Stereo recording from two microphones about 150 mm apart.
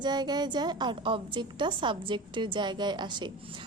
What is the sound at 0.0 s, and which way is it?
A woman's voice, 30° right (ahead or behind).